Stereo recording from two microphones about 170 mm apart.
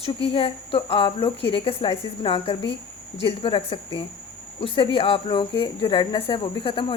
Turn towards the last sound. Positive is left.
turn(degrees=30)  # may be behind; listen again after turning